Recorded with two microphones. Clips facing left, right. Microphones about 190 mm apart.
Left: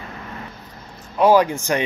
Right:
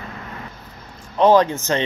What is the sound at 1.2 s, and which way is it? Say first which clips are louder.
Speech: right 1 dB; 10° left (ahead or behind).